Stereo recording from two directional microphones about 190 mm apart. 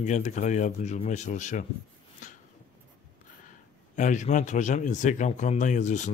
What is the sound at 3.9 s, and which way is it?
Speech, 40° left (ahead or behind).